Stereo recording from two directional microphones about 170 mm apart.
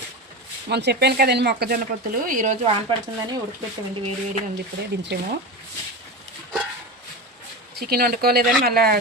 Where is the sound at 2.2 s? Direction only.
50° right (ahead or behind).